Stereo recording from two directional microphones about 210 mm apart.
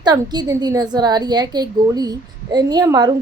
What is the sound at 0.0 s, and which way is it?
A woman's voice, 20° right (ahead or behind).